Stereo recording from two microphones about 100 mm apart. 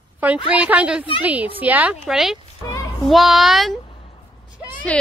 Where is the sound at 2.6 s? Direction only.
40° left (ahead or behind).